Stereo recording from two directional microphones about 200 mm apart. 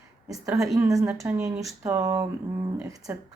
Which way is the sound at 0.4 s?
15° right (ahead or behind).